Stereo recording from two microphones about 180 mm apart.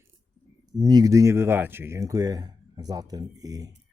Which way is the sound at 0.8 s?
20° right (ahead or behind).